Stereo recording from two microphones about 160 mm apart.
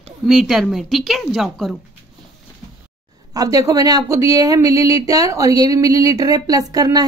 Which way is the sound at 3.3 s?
20° right (ahead or behind).